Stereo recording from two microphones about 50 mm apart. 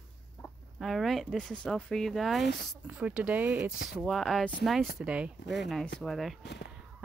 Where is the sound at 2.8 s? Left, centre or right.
Right.